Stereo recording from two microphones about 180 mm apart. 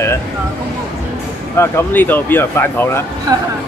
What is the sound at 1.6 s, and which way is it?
Speech, 10° left (ahead or behind).